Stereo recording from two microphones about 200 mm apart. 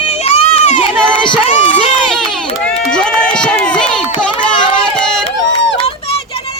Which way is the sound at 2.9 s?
5° left (ahead or behind).